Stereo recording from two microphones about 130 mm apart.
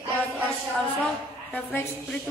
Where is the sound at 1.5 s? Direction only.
15° left (ahead or behind).